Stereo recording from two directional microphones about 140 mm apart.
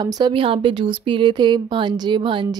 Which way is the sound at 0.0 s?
35° right (ahead or behind).